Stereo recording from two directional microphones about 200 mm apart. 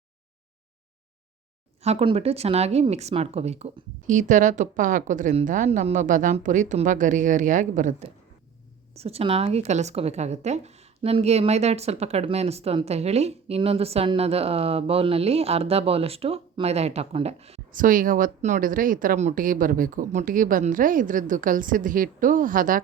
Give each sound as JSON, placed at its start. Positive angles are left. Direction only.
{"t": 1.8, "sound": "speech", "side_deg": -30}